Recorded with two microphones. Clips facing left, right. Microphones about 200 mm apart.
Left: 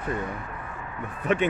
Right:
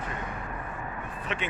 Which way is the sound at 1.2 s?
45° left (ahead or behind).